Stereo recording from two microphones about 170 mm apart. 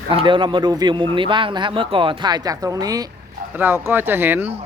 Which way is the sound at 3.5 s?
10° right (ahead or behind).